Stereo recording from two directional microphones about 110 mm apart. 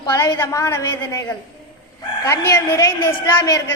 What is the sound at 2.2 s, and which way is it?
A woman's voice, 30° left (ahead or behind).